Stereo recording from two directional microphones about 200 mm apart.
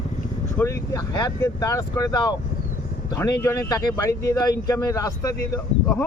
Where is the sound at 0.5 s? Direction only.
15° left (ahead or behind).